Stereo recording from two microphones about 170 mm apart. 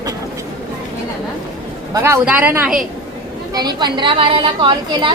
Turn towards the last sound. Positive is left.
turn(degrees=-25)  # may be behind; listen again after turning